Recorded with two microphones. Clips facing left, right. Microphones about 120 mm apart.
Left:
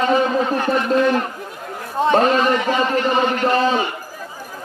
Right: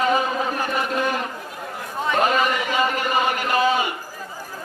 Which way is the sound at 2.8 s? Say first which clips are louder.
Left 4 dB; 10° right (ahead or behind).